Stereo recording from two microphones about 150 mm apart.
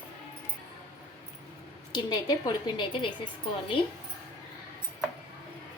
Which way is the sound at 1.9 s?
25° left (ahead or behind).